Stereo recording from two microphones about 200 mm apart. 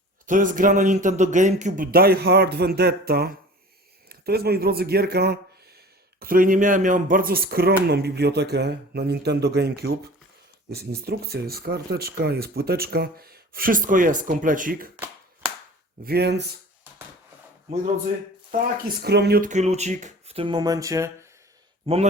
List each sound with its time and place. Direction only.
0.3 s a man's voice: 40° right (ahead or behind)
16.0 s speech: 55° right (ahead or behind)
19.0 s speech: 55° right (ahead or behind)
19.5 s speech: 35° right (ahead or behind); by 21.2 s 15° right (ahead or behind)
21.9 s speech: 25° right (ahead or behind)